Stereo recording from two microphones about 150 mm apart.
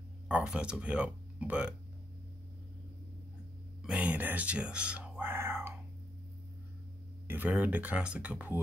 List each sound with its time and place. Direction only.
0.3 s speech: 10° right (ahead or behind)
3.8 s whispering: 10° right (ahead or behind)
7.2 s speech: 10° right (ahead or behind)